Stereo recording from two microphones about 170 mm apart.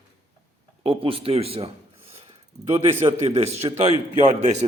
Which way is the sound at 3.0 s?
30° right (ahead or behind).